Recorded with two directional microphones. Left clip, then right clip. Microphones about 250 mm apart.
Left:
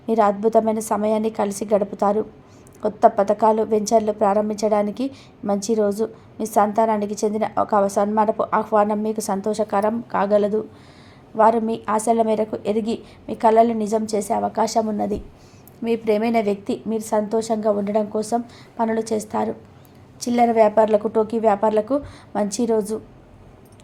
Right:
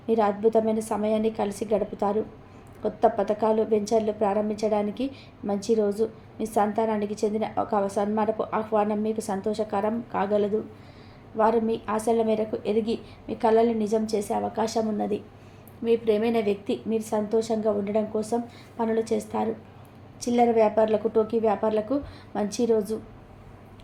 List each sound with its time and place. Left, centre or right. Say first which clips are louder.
0.0 s a woman's voice: left 4 dB; left